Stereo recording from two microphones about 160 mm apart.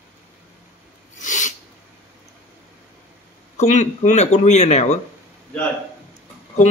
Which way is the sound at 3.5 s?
50° left (ahead or behind).